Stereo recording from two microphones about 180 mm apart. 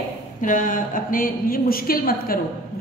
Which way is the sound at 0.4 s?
45° left (ahead or behind).